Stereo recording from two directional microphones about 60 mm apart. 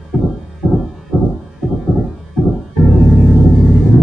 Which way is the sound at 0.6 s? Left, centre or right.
Centre.